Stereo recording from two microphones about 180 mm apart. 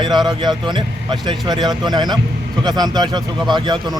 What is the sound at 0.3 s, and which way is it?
Speech, 25° right (ahead or behind).